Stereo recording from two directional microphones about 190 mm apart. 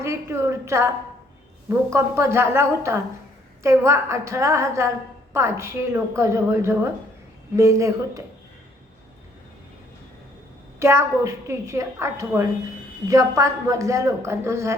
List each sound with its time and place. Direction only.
0.0 s a woman's voice: 15° right (ahead or behind)
10.8 s a woman's voice: 15° right (ahead or behind)